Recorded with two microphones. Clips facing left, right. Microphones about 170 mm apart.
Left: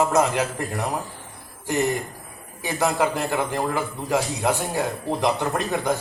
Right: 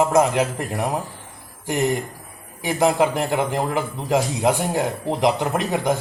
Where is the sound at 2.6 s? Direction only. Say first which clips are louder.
Right 4 dB; 20° right (ahead or behind).